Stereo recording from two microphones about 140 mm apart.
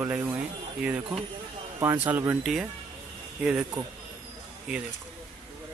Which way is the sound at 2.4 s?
5° right (ahead or behind).